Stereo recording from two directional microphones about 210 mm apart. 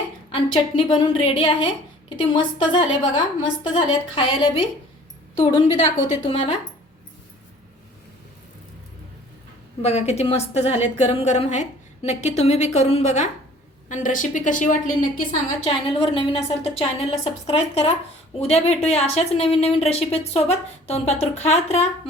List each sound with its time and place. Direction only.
0.5 s a woman's voice: 25° left (ahead or behind)
9.8 s a woman's voice: 30° left (ahead or behind)
15.9 s a woman's voice: 25° left (ahead or behind)